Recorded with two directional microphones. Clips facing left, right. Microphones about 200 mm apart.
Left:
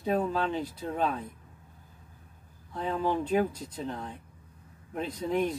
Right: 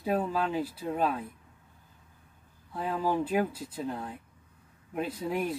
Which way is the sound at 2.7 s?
5° right (ahead or behind).